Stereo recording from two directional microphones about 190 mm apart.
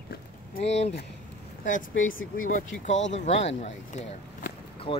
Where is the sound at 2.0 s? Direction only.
45° left (ahead or behind); by 5.0 s 25° left (ahead or behind).